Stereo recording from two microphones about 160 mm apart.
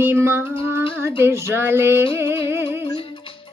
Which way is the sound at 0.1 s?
15° right (ahead or behind).